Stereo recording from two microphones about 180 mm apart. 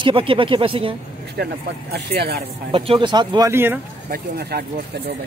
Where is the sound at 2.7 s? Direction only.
25° right (ahead or behind).